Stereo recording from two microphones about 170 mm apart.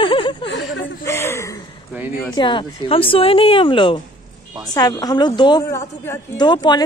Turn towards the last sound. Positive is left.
turn(degrees=25)  # may be behind; listen again after turning